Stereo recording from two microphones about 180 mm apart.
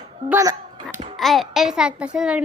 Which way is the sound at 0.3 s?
15° right (ahead or behind).